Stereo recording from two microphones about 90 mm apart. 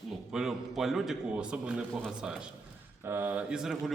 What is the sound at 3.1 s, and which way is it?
Speech, 25° right (ahead or behind).